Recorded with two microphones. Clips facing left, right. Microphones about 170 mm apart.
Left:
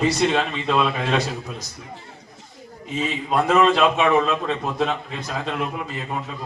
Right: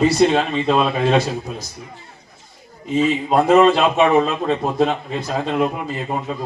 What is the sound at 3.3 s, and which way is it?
A man's voice, 35° right (ahead or behind).